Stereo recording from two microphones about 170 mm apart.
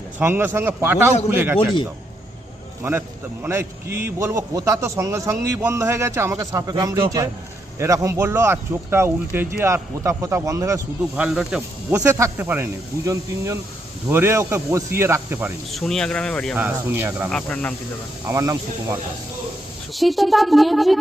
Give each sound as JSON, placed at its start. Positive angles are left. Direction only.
{"t": 0.2, "sound": "a man's voice", "side_deg": -10}
{"t": 3.4, "sound": "a man's voice", "side_deg": -15}
{"t": 11.1, "sound": "a man's voice", "side_deg": -5}
{"t": 11.9, "sound": "a man's voice", "side_deg": -15}
{"t": 15.7, "sound": "speech", "side_deg": 5}
{"t": 16.6, "sound": "a man's voice", "side_deg": -10}
{"t": 17.3, "sound": "speech", "side_deg": 5}
{"t": 18.3, "sound": "a man's voice", "side_deg": -20}
{"t": 19.9, "sound": "speech", "side_deg": 0}